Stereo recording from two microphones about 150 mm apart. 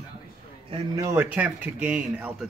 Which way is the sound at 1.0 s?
15° right (ahead or behind).